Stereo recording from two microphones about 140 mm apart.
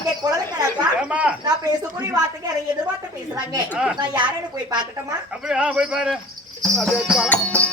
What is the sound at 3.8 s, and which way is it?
Speech, 10° right (ahead or behind).